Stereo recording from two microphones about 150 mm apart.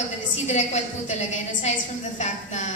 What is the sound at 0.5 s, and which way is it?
A woman's voice, 50° left (ahead or behind).